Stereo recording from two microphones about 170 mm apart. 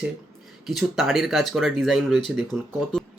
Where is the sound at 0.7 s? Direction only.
Centre (ahead or behind).